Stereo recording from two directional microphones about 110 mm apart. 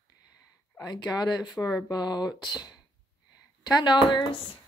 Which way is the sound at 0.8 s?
40° left (ahead or behind).